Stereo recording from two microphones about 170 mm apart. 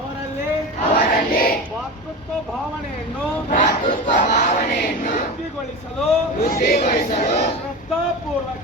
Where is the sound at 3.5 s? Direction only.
50° left (ahead or behind).